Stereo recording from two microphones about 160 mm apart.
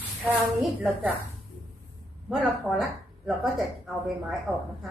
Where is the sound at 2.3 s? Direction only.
Centre (ahead or behind).